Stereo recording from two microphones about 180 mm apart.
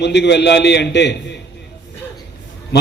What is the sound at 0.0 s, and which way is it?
A man's voice, 70° left (ahead or behind).